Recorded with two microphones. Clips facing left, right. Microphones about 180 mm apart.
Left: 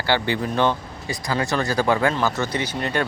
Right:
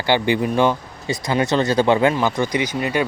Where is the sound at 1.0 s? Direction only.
20° right (ahead or behind).